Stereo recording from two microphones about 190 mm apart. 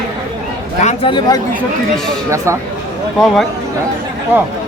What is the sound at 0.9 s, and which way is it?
Speech, 25° left (ahead or behind).